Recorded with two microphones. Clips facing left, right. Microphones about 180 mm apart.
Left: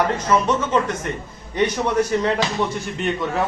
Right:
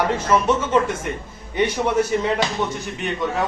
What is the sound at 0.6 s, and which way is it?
Speech, 10° right (ahead or behind).